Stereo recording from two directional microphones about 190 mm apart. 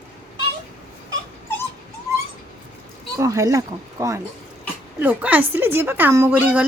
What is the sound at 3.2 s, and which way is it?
A woman's voice, 15° right (ahead or behind).